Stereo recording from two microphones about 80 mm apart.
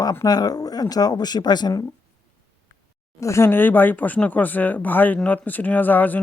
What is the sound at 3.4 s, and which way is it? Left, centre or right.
Speech, left.